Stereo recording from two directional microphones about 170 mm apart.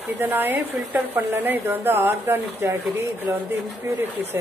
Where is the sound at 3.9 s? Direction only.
15° right (ahead or behind).